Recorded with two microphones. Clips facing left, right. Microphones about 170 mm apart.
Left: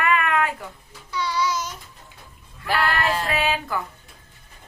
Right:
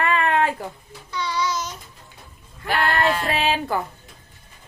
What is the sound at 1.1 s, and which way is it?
Child singing, 10° left (ahead or behind).